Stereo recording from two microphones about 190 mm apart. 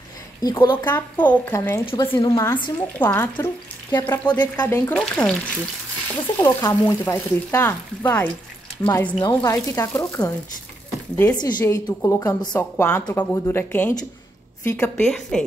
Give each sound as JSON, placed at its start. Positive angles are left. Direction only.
{"t": 0.4, "sound": "speech", "side_deg": 20}
{"t": 0.8, "sound": "speech", "side_deg": 10}
{"t": 1.9, "sound": "speech", "side_deg": 25}
{"t": 6.4, "sound": "speech", "side_deg": 10}
{"t": 15.0, "sound": "a woman's voice", "side_deg": 0}